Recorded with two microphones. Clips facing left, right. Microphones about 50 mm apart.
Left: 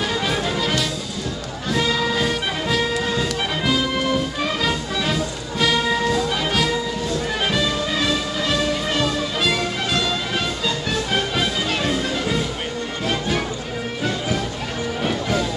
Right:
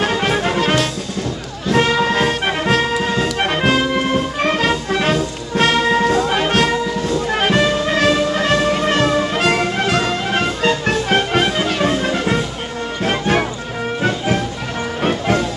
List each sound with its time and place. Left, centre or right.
0.0 s music: right